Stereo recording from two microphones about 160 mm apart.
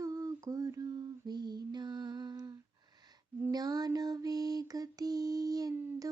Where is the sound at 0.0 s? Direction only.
20° right (ahead or behind).